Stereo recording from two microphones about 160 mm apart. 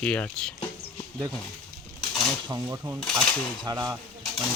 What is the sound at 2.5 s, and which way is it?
Speech, 20° right (ahead or behind).